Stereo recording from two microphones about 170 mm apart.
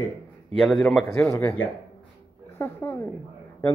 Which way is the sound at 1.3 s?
15° left (ahead or behind).